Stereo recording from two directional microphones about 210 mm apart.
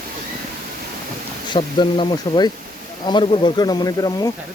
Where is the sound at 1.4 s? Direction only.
25° left (ahead or behind).